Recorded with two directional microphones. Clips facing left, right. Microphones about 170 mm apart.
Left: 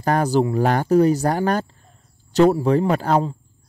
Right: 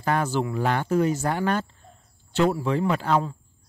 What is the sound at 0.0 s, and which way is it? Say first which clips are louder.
Speech: left 6 dB; 40° left (ahead or behind).